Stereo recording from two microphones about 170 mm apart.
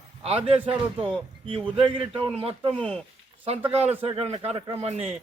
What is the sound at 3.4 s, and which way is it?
A man's voice, 35° right (ahead or behind).